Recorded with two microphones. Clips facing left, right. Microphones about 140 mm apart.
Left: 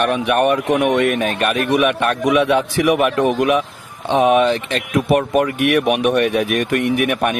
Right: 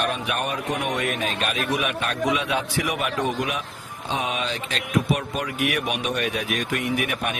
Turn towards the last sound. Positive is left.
turn(degrees=60)  # may be behind; listen again after turning